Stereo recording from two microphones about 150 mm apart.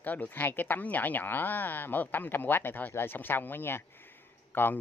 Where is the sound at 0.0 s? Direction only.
10° left (ahead or behind).